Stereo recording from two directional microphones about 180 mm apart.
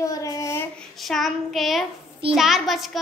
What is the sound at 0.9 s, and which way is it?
A child's voice, centre (ahead or behind).